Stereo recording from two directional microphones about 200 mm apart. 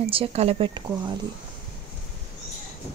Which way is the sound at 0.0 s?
30° right (ahead or behind).